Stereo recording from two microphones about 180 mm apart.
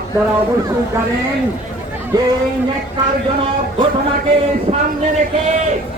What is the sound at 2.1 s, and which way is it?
Speech, 20° right (ahead or behind).